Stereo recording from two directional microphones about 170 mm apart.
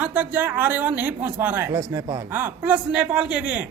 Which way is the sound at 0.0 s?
10° right (ahead or behind).